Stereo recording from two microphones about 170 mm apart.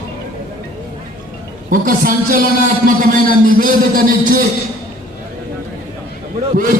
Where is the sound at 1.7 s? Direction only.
55° right (ahead or behind).